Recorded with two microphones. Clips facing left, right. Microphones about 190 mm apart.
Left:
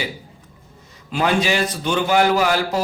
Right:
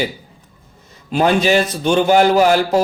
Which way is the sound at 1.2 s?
40° right (ahead or behind).